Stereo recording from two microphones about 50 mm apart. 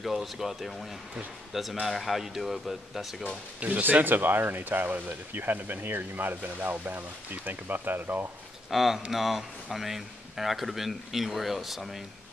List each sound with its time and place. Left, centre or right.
0.0 s speech: centre
3.8 s speech: right
8.6 s speech: centre